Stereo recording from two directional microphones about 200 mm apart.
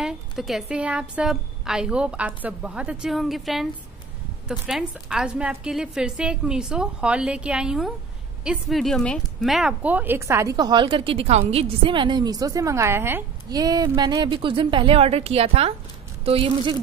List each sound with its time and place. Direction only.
0.0 s a woman's voice: centre (ahead or behind); by 16.7 s 25° right (ahead or behind)